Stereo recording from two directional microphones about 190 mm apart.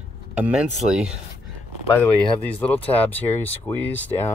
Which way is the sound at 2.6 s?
10° left (ahead or behind).